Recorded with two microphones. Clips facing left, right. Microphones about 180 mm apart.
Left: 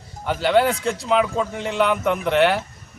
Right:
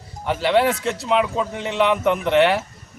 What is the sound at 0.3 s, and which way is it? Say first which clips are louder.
A man's voice: even; centre (ahead or behind).